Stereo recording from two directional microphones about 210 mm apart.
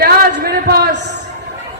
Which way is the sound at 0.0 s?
45° right (ahead or behind).